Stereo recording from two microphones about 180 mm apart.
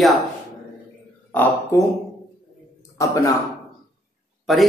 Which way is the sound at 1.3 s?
10° left (ahead or behind).